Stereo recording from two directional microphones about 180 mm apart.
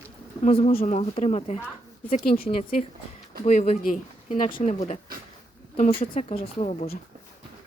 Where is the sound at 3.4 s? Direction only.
40° left (ahead or behind).